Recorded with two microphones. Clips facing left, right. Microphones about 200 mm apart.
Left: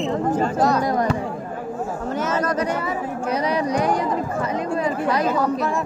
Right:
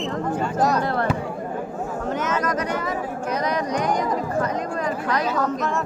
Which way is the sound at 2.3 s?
30° left (ahead or behind).